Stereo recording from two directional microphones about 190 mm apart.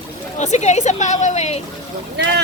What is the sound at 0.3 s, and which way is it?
Speech, 35° left (ahead or behind).